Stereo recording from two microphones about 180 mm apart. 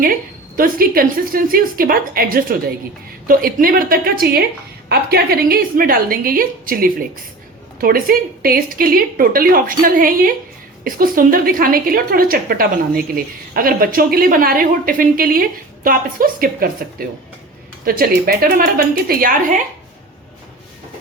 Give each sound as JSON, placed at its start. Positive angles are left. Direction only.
{"t": 0.5, "sound": "a woman's voice", "side_deg": -55}